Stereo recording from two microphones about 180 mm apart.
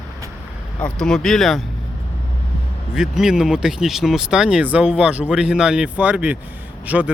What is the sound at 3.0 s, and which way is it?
Speech, 5° right (ahead or behind).